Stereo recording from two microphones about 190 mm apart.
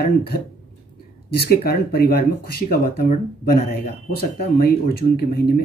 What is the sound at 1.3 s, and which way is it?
Speech, 55° left (ahead or behind).